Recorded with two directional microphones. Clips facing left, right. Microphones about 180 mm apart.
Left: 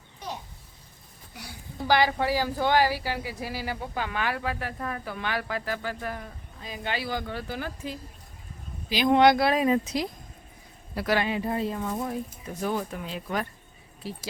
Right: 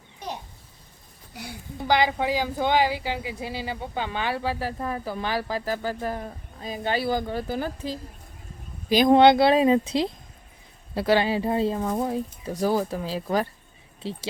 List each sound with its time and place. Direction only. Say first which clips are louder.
1.8 s speech: right 1 dB; 20° right (ahead or behind); by 9.2 s 40° right (ahead or behind)
9.2 s speech: right 4 dB; 25° right (ahead or behind)